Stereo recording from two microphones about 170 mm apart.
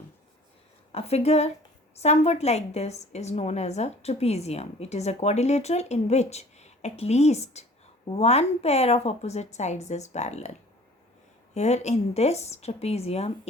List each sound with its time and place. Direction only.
0.9 s a woman's voice: 40° left (ahead or behind)
11.5 s a woman's voice: 40° left (ahead or behind)